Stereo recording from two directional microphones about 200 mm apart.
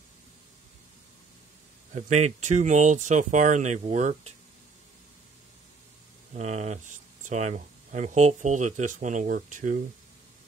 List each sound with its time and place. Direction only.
2.0 s speech: 35° right (ahead or behind)
6.3 s speech: 35° right (ahead or behind)